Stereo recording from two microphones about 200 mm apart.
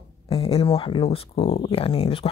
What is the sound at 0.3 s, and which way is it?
Speech, 30° left (ahead or behind).